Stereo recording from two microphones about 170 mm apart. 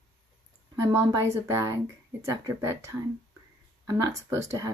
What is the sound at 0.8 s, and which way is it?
Speech, 15° right (ahead or behind).